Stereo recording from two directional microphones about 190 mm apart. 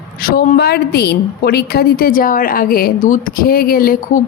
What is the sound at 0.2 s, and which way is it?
A woman's voice, 50° left (ahead or behind).